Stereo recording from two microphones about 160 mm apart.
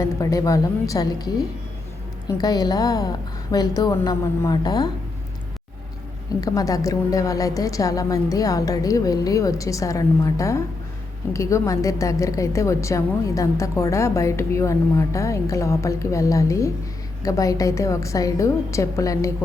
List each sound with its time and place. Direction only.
0.0 s a woman's voice: 20° left (ahead or behind)
6.4 s a woman's voice: 20° left (ahead or behind)